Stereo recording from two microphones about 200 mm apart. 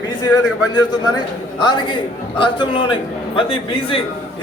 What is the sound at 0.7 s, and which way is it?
A man's voice, 20° left (ahead or behind).